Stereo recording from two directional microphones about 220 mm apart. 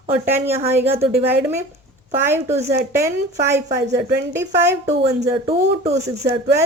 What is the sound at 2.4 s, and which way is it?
Speech, 30° right (ahead or behind).